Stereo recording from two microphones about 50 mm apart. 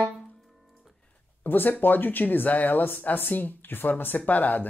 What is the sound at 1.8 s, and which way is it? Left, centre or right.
Speech, left.